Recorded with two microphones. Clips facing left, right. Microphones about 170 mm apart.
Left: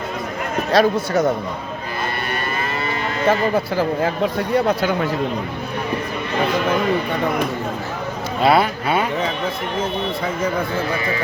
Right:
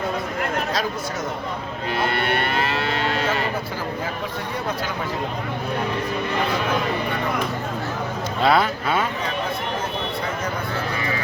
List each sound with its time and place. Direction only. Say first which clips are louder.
0.7 s speech: left 10 dB; 70° left (ahead or behind)
2.1 s cattle: right 2 dB; 70° right (ahead or behind)
8.4 s speech: left 3 dB; 10° left (ahead or behind)